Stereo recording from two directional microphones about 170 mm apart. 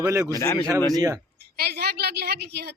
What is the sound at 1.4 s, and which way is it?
A woman's voice, 70° right (ahead or behind).